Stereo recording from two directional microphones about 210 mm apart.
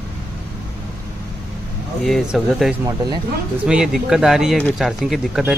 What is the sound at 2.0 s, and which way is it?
Speech, centre (ahead or behind).